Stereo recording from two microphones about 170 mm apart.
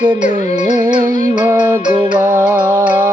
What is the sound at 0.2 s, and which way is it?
Music, 45° left (ahead or behind).